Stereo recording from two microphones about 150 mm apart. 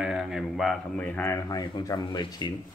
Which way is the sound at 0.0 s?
Centre (ahead or behind).